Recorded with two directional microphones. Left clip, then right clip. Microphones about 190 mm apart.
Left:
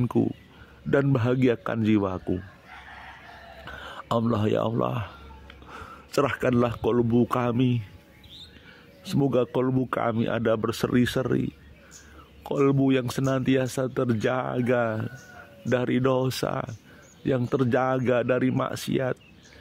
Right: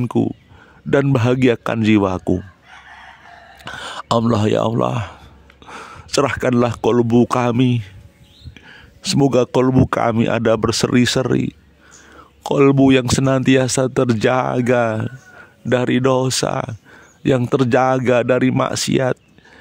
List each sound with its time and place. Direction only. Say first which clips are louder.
0.0 s a man's voice: right 6 dB; 20° right (ahead or behind)
3.6 s speech: right 11 dB; 30° right (ahead or behind)
9.0 s a man's voice: right 9 dB; 30° right (ahead or behind)